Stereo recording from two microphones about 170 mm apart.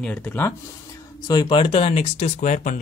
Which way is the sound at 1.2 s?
25° left (ahead or behind).